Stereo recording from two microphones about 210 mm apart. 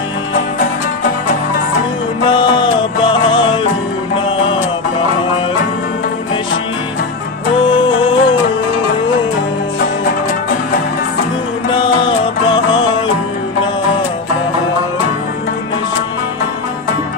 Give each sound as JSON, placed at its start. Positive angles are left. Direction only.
{"t": 2.2, "sound": "music", "side_deg": 20}
{"t": 7.6, "sound": "music", "side_deg": 25}
{"t": 11.7, "sound": "music", "side_deg": 25}